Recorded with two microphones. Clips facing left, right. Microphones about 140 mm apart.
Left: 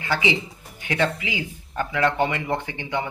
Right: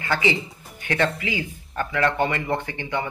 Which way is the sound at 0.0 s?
15° left (ahead or behind).